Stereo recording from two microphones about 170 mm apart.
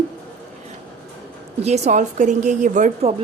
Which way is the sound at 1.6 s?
45° right (ahead or behind).